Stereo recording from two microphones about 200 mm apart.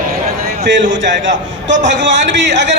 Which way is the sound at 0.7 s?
65° right (ahead or behind).